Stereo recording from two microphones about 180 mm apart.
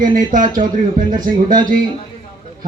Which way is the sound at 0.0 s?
45° right (ahead or behind).